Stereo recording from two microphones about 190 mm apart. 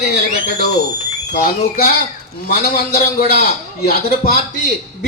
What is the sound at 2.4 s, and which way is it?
A man's voice, 50° left (ahead or behind).